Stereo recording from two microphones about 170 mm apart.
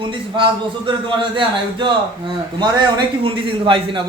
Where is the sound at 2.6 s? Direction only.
25° right (ahead or behind).